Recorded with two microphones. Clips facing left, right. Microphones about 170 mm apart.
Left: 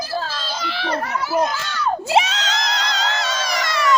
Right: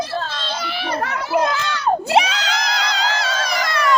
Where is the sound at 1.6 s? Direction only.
65° right (ahead or behind).